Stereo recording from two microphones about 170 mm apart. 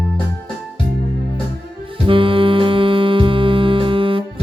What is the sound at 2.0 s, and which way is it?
Music, 30° right (ahead or behind).